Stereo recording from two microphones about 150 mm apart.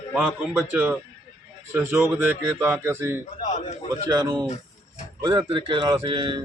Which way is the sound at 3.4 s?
55° left (ahead or behind).